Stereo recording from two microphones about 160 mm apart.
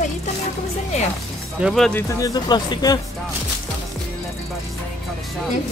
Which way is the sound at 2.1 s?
25° left (ahead or behind).